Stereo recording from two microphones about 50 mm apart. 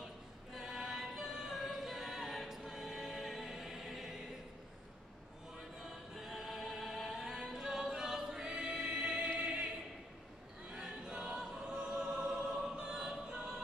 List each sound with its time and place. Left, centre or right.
0.6 s music: centre
5.6 s music: centre
9.4 s choir: right
10.7 s choir: centre